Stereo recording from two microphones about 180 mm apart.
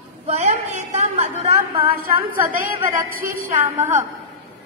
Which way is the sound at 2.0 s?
55° right (ahead or behind).